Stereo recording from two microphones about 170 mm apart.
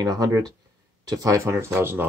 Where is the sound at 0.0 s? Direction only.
20° right (ahead or behind).